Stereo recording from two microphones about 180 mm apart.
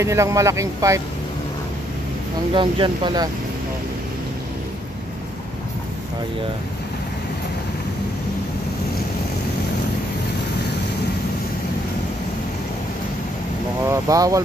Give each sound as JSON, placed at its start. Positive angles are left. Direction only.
{"t": 0.0, "sound": "speech", "side_deg": -15}
{"t": 2.5, "sound": "speech", "side_deg": -25}
{"t": 13.8, "sound": "speech", "side_deg": -20}